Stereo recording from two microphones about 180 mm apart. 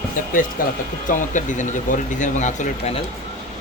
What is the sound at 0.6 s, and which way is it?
Speech, 50° left (ahead or behind).